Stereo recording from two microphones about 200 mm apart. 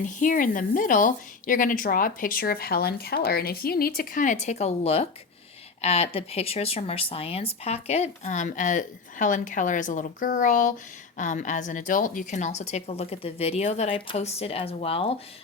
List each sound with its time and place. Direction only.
0.0 s a woman's voice: 40° left (ahead or behind)